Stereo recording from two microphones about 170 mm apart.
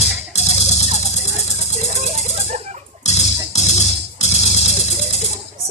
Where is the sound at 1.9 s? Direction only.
40° right (ahead or behind).